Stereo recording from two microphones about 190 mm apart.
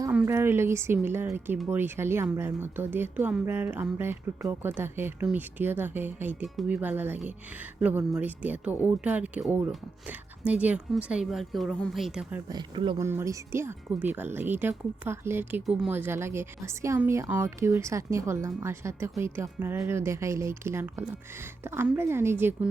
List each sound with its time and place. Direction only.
0.1 s speech: 10° right (ahead or behind)
12.5 s speech: 25° right (ahead or behind)
13.1 s speech: 15° right (ahead or behind)